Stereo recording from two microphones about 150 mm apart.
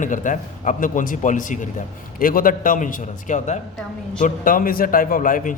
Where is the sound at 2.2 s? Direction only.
70° left (ahead or behind).